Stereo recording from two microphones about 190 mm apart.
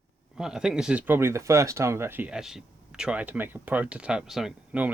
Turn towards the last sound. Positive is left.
turn(degrees=-5)  # may be behind; listen again after turning